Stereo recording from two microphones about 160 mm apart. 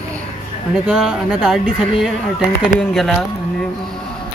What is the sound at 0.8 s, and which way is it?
Speech, 5° right (ahead or behind).